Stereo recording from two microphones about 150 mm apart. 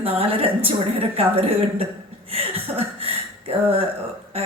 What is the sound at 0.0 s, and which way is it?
A woman's voice, 40° right (ahead or behind).